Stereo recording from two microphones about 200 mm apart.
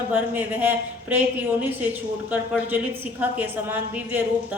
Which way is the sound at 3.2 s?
10° right (ahead or behind).